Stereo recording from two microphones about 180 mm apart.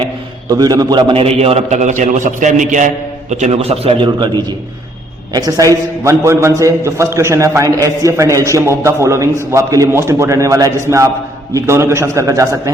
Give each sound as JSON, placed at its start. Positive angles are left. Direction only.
{"t": 0.5, "sound": "a man's voice", "side_deg": -20}